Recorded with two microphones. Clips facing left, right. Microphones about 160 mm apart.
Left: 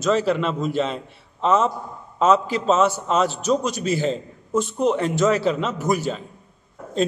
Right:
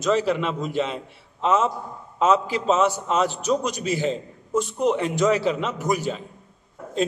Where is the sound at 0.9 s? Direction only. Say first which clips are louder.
Left 1 dB; 5° right (ahead or behind).